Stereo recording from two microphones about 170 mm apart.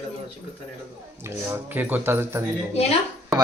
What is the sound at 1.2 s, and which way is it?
Speech, 15° right (ahead or behind).